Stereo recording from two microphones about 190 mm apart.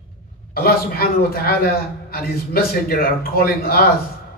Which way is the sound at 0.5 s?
55° left (ahead or behind).